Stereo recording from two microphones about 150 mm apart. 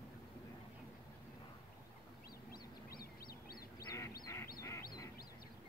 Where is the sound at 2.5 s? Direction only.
85° left.